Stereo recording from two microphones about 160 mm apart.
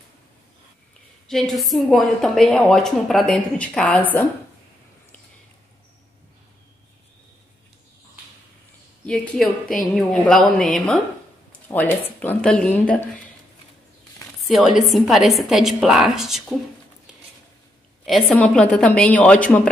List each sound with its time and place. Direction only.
1.2 s a woman's voice: 5° left (ahead or behind)
9.0 s a woman's voice: 5° left (ahead or behind)
14.5 s a woman's voice: centre (ahead or behind)
18.0 s a woman's voice: 5° left (ahead or behind)